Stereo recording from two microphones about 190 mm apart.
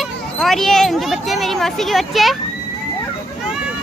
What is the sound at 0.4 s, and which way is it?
Speech, centre (ahead or behind).